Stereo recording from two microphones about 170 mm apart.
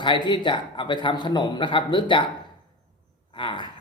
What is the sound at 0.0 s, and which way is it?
Speech, 30° left (ahead or behind).